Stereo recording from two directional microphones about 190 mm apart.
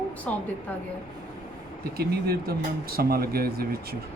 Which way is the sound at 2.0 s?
55° right (ahead or behind).